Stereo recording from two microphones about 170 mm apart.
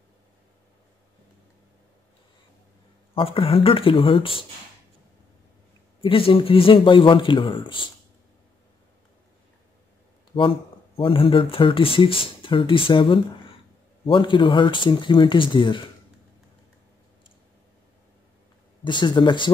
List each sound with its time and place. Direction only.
3.2 s speech: 35° left (ahead or behind)
5.9 s a man's voice: 30° left (ahead or behind)
11.0 s a man's voice: 30° left (ahead or behind)
18.9 s a man's voice: 25° left (ahead or behind)